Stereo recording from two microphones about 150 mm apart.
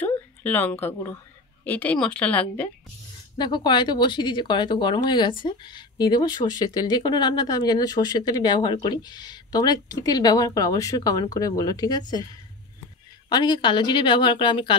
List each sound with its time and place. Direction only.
0.0 s speech: 10° left (ahead or behind)
3.3 s speech: 30° left (ahead or behind)
13.3 s a woman's voice: 30° left (ahead or behind)